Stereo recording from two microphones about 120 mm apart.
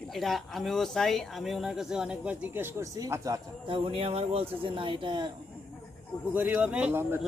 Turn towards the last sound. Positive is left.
turn(degrees=-10)  # may be behind; listen again after turning